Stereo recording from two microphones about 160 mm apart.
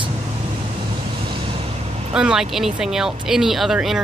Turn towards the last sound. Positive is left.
turn(degrees=0)  # may be behind; listen again after turning